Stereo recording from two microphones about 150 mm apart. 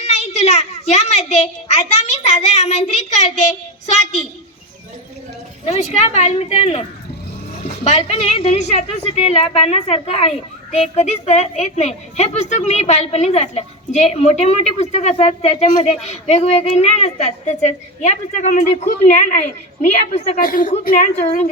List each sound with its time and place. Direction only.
0.0 s a sound: 45° left (ahead or behind)
5.6 s a woman's voice: 45° left (ahead or behind)
7.9 s a woman's voice: 40° left (ahead or behind)
20.4 s a woman's voice: 65° left (ahead or behind)